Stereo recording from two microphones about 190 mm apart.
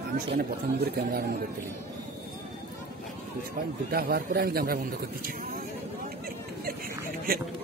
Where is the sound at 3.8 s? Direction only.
55° right (ahead or behind).